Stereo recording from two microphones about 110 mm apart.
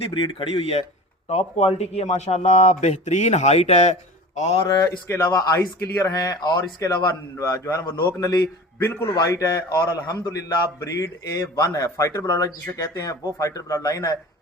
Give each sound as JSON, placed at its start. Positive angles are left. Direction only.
{"t": 0.1, "sound": "speech", "side_deg": 45}
{"t": 1.3, "sound": "a man's voice", "side_deg": 70}
{"t": 4.6, "sound": "a man's voice", "side_deg": 30}
{"t": 9.1, "sound": "a man's voice", "side_deg": 30}